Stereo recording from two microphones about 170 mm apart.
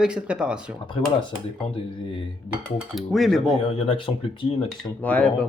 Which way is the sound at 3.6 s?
35° left (ahead or behind).